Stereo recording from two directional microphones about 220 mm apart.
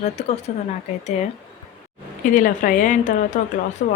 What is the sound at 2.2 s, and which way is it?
A woman's voice, 35° left (ahead or behind).